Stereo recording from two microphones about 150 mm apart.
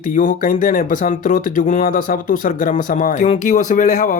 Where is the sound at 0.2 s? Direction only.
65° left (ahead or behind).